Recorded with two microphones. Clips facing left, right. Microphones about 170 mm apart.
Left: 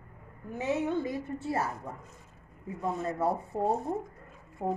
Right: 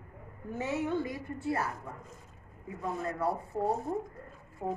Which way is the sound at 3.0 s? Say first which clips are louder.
Left 2 dB; 25° left (ahead or behind).